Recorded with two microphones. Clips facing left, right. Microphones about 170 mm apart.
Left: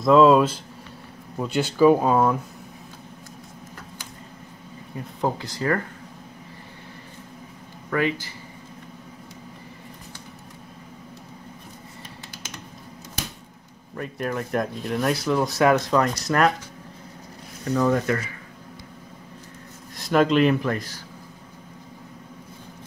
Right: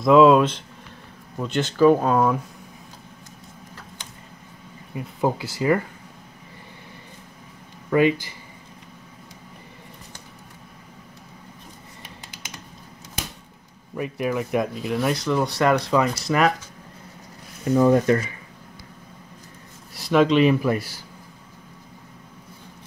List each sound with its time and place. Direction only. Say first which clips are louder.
0.0 s speech: right 1 dB; centre (ahead or behind)
4.9 s speech: right 2 dB; 10° right (ahead or behind)
7.9 s speech: right 6 dB; 20° right (ahead or behind)
13.9 s speech: right 3 dB; 10° right (ahead or behind)
17.6 s speech: right 5 dB; 20° right (ahead or behind)
20.0 s speech: right 1 dB; centre (ahead or behind)